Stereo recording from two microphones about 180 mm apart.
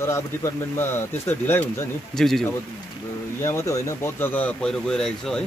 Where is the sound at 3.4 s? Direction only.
15° left (ahead or behind).